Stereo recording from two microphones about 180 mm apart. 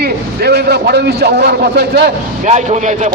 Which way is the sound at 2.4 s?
40° right (ahead or behind).